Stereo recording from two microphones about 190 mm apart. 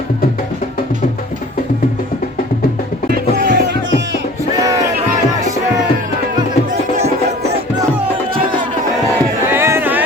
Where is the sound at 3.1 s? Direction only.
55° right (ahead or behind).